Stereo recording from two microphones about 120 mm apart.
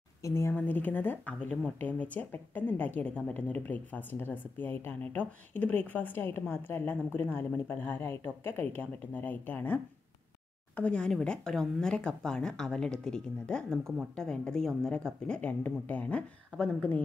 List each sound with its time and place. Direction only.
0.2 s a woman's voice: 25° left (ahead or behind)
10.8 s a woman's voice: 10° left (ahead or behind)